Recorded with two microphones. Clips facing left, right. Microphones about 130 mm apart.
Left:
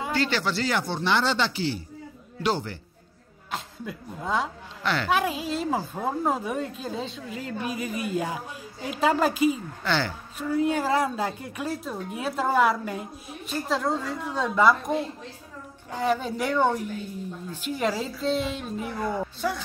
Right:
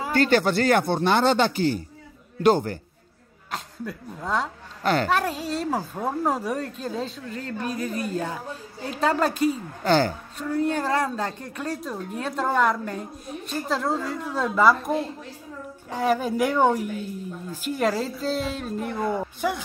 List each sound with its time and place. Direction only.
0.1 s speech: 50° right (ahead or behind)
3.5 s speech: centre (ahead or behind)
4.8 s speech: 45° right (ahead or behind)
5.1 s a woman's voice: 5° left (ahead or behind)
9.5 s speech: 45° right (ahead or behind)
10.6 s a woman's voice: 10° left (ahead or behind)